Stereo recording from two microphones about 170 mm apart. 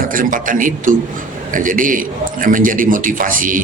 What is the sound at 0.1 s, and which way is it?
A man's voice, 55° right (ahead or behind).